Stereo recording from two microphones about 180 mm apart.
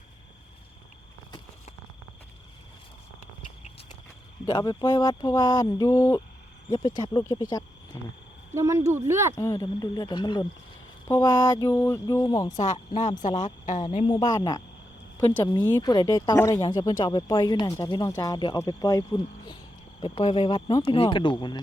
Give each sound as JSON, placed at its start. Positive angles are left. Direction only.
{"t": 4.4, "sound": "speech", "side_deg": 20}
{"t": 8.5, "sound": "speech", "side_deg": -15}
{"t": 9.3, "sound": "speech", "side_deg": 15}
{"t": 12.5, "sound": "speech", "side_deg": 40}
{"t": 15.6, "sound": "speech", "side_deg": 10}
{"t": 15.9, "sound": "speech", "side_deg": 20}